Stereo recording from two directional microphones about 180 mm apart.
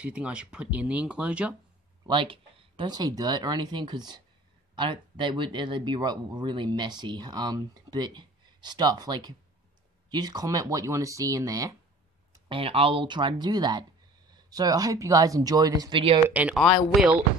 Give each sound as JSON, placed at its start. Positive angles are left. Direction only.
{"t": 0.0, "sound": "speech", "side_deg": -5}
{"t": 2.0, "sound": "speech", "side_deg": -30}
{"t": 12.3, "sound": "speech", "side_deg": -30}
{"t": 16.3, "sound": "speech", "side_deg": -5}